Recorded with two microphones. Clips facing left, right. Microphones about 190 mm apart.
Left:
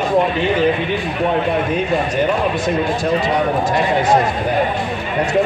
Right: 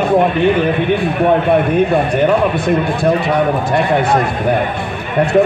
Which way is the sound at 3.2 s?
60° right (ahead or behind).